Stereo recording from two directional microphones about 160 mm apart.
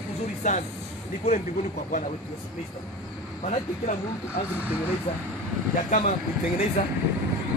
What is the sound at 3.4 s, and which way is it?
Speech, 45° left (ahead or behind).